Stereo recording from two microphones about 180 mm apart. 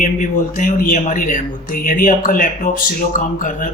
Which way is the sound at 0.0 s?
45° left (ahead or behind).